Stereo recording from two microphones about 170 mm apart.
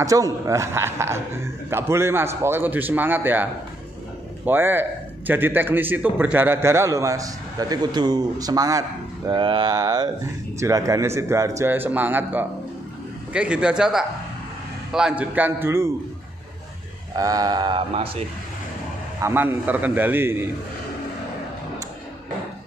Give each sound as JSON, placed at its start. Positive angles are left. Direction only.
{"t": 0.0, "sound": "a man's voice", "side_deg": -20}
{"t": 4.5, "sound": "a man's voice", "side_deg": -10}
{"t": 17.1, "sound": "speech", "side_deg": -20}
{"t": 19.2, "sound": "a man's voice", "side_deg": -10}